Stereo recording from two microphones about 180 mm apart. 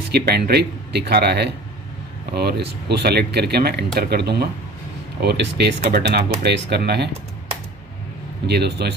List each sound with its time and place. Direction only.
0.1 s speech: 65° right (ahead or behind)
8.5 s speech: 65° right (ahead or behind)